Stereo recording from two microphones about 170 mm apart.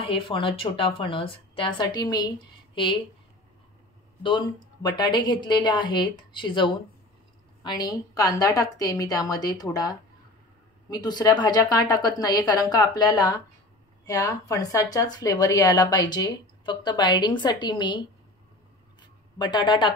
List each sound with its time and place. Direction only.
0.0 s speech: 30° left (ahead or behind)
4.2 s speech: 25° left (ahead or behind)
18.9 s a sound: 25° left (ahead or behind)